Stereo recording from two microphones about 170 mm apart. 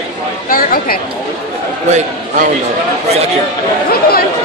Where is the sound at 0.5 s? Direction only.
55° left (ahead or behind).